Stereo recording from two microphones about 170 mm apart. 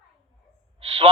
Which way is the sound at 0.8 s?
35° right (ahead or behind).